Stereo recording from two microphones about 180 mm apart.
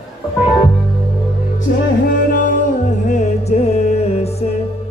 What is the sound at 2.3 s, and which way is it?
Music, 45° left (ahead or behind).